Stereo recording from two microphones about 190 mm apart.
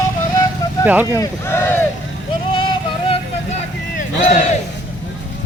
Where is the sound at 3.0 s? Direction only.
30° left (ahead or behind).